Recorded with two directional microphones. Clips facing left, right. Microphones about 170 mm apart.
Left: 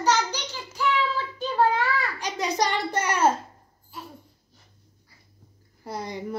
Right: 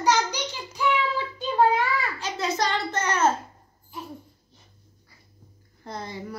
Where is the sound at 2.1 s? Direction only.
15° left (ahead or behind).